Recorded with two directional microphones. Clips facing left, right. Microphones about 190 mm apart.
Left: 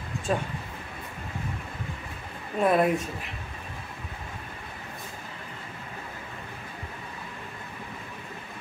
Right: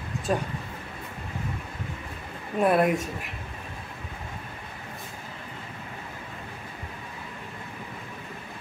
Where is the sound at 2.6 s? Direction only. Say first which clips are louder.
Right 1 dB; 5° right (ahead or behind).